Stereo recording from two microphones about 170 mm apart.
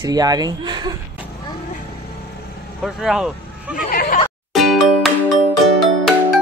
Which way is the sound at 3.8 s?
60° left (ahead or behind).